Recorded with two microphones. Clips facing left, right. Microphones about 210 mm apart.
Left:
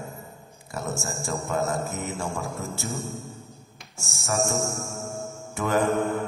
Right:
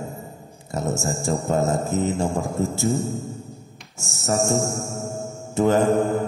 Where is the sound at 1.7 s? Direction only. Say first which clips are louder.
Right 7 dB; 20° right (ahead or behind).